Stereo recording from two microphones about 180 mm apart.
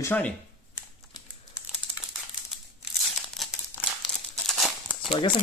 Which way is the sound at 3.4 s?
Centre (ahead or behind).